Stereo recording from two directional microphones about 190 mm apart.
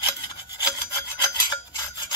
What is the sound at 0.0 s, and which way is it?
Rub, 20° left (ahead or behind).